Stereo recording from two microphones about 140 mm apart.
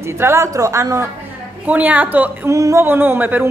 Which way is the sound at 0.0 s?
20° right (ahead or behind).